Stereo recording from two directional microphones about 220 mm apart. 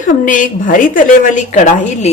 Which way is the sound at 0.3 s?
35° left (ahead or behind).